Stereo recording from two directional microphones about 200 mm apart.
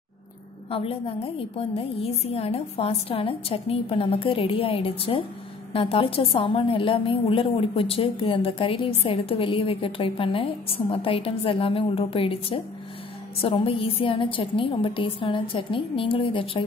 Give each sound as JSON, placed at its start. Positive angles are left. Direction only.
{"t": 0.7, "sound": "a woman's voice", "side_deg": 25}